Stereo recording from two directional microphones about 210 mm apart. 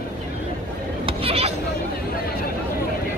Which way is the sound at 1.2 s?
30° right (ahead or behind).